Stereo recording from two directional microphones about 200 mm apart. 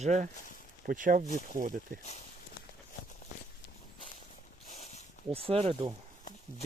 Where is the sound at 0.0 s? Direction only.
35° right (ahead or behind).